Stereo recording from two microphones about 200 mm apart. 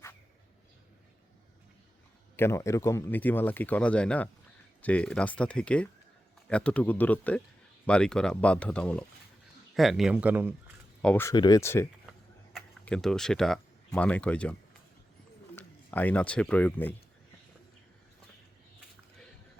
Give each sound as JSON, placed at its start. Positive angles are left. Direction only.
{"t": 2.3, "sound": "a man's voice", "side_deg": 10}
{"t": 11.0, "sound": "a man's voice", "side_deg": 10}
{"t": 15.5, "sound": "speech", "side_deg": 10}